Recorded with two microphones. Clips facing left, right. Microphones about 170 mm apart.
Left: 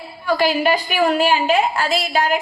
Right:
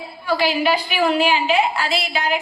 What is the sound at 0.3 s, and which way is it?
A woman's voice, 45° left (ahead or behind).